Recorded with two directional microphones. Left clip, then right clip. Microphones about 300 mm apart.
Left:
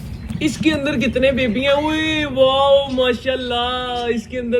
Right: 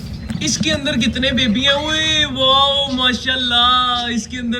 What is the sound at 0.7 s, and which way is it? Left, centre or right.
Speech, centre.